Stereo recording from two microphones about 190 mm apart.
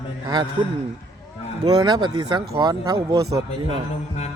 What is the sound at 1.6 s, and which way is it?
Speech, 20° right (ahead or behind).